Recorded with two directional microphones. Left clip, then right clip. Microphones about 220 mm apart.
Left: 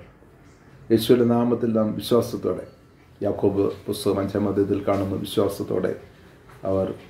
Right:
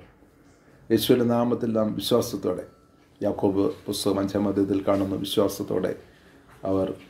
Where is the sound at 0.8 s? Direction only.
30° right (ahead or behind).